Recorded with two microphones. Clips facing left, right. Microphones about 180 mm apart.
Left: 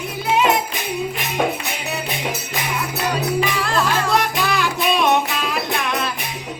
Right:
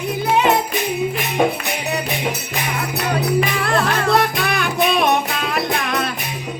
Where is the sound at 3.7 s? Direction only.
60° right (ahead or behind).